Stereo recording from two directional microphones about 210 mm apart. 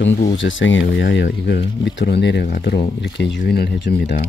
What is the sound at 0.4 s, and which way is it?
Speech, 65° left (ahead or behind).